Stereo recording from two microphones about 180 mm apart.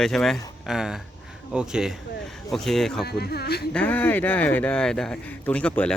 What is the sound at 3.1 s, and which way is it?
Speech, 65° left (ahead or behind).